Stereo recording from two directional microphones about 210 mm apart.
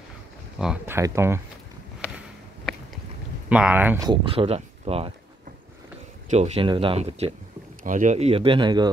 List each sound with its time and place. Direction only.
0.6 s speech: 5° right (ahead or behind)
0.9 s speech: 15° right (ahead or behind)
3.4 s speech: 5° right (ahead or behind)
4.1 s speech: 25° right (ahead or behind)
6.3 s speech: 30° right (ahead or behind)